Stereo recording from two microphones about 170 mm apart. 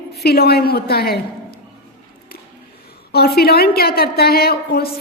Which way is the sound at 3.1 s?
70° left (ahead or behind).